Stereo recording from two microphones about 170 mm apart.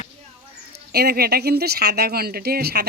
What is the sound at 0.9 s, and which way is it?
Speech, 65° right (ahead or behind).